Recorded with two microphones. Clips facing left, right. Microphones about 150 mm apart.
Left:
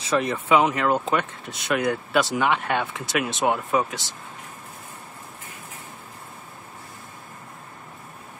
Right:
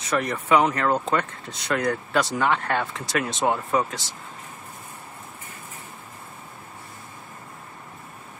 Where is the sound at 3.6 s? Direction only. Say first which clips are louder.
Even; centre (ahead or behind).